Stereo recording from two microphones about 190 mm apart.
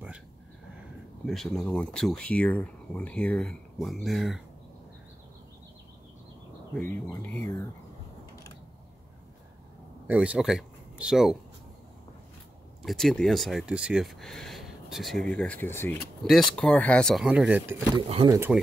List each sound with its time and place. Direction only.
1.2 s speech: centre (ahead or behind)
7.1 s speech: 10° left (ahead or behind)
10.0 s speech: 5° right (ahead or behind)
12.8 s speech: centre (ahead or behind)
17.9 s speech: 25° right (ahead or behind)